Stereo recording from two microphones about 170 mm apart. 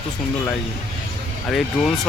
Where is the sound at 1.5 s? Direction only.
Centre (ahead or behind).